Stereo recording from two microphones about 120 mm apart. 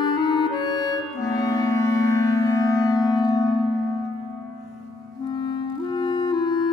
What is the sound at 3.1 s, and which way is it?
Music, 30° left (ahead or behind).